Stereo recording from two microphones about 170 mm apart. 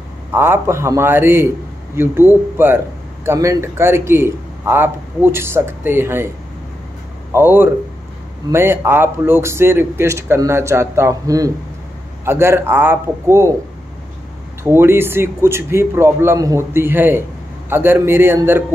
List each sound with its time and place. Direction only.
0.3 s a man's voice: 15° right (ahead or behind)
7.3 s a man's voice: 10° right (ahead or behind)
14.6 s a man's voice: 15° right (ahead or behind)